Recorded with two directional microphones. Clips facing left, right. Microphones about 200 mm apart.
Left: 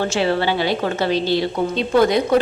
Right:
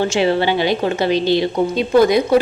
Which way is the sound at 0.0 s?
15° right (ahead or behind).